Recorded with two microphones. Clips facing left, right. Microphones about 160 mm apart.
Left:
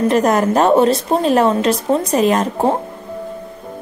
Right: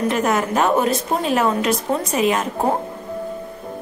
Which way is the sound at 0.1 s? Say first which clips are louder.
Left 5 dB; 35° left (ahead or behind).